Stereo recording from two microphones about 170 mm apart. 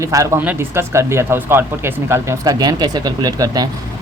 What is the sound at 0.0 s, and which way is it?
Speech, 20° right (ahead or behind).